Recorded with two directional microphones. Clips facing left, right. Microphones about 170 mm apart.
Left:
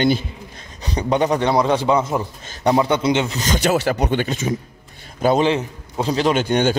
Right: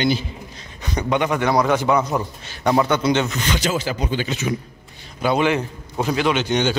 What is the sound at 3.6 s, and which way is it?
Speech, 65° left (ahead or behind).